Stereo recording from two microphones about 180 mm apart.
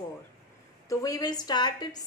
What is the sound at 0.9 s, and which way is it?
A woman's voice, 20° left (ahead or behind).